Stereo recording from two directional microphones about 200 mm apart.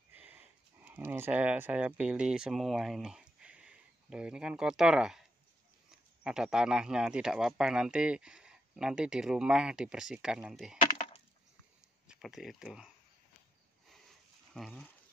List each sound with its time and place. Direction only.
0.1 s speech: 10° right (ahead or behind)
10.8 s wood: 25° left (ahead or behind)
12.1 s speech: centre (ahead or behind)
14.5 s speech: centre (ahead or behind)